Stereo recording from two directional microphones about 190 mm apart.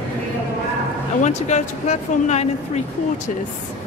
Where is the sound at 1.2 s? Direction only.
35° left (ahead or behind).